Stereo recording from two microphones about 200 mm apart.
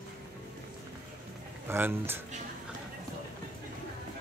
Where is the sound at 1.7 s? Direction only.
10° right (ahead or behind).